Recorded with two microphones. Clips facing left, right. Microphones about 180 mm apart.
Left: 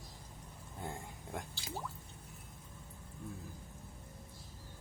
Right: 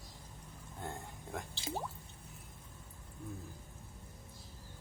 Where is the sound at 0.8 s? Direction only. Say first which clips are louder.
Even; 5° left (ahead or behind).